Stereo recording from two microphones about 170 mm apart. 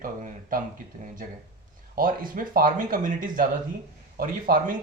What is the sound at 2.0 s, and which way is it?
Speech, 55° right (ahead or behind).